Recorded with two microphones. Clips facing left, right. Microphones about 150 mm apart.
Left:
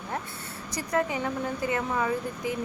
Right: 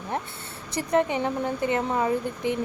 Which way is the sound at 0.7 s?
25° right (ahead or behind).